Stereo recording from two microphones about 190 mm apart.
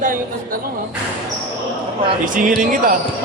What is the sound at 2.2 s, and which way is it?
Speech, 45° right (ahead or behind).